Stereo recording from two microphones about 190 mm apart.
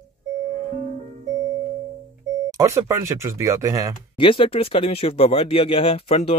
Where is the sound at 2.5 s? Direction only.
15° right (ahead or behind).